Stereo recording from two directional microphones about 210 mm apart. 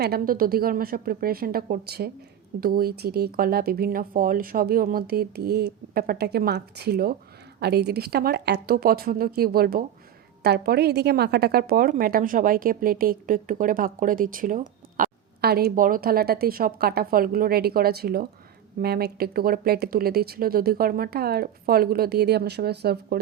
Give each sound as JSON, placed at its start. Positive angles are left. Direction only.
{"t": 0.0, "sound": "a woman's voice", "side_deg": -45}